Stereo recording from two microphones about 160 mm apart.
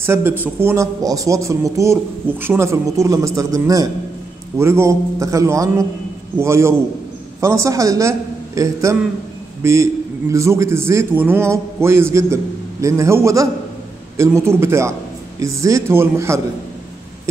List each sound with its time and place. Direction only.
0.0 s a man's voice: 15° right (ahead or behind)